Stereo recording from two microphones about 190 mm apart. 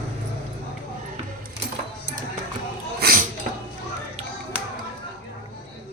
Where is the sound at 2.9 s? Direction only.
55° right (ahead or behind).